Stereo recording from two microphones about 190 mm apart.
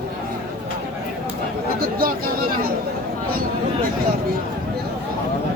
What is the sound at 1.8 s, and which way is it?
Chatter, 50° right (ahead or behind).